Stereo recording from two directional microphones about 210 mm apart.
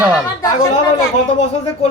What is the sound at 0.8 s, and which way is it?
Speech, 20° left (ahead or behind).